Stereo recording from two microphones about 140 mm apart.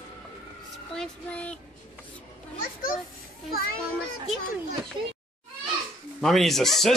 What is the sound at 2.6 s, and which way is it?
Children playing, 85° left.